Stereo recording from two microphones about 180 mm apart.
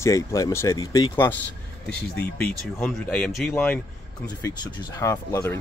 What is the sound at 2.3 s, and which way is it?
Speech, 5° left (ahead or behind).